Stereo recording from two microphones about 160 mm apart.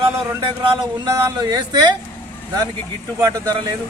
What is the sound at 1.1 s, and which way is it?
Speech, 20° right (ahead or behind).